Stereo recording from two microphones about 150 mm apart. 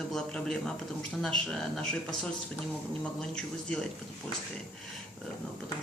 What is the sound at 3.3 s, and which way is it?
Speech, 5° left (ahead or behind).